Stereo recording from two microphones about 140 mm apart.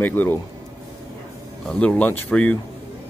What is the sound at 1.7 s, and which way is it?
Speech, 10° left (ahead or behind).